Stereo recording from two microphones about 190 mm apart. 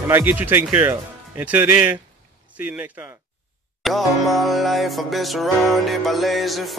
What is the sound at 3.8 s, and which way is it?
Music, centre (ahead or behind).